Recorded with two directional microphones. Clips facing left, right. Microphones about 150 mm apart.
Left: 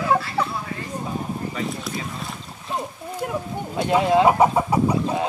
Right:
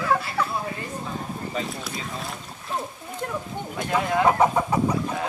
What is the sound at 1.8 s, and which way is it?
Boat, centre (ahead or behind).